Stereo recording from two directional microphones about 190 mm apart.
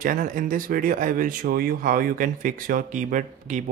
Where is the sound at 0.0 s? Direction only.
45° right (ahead or behind).